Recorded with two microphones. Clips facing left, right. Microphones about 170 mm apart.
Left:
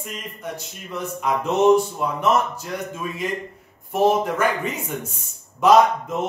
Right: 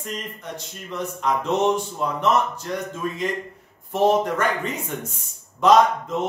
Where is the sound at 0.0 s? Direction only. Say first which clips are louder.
Even; 10° left (ahead or behind).